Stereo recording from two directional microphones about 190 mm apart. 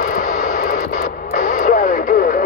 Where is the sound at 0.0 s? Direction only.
50° left (ahead or behind).